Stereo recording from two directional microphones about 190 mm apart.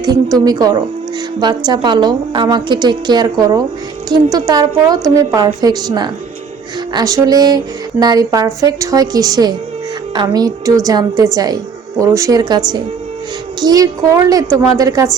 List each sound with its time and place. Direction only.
0.3 s a woman's voice: 20° right (ahead or behind)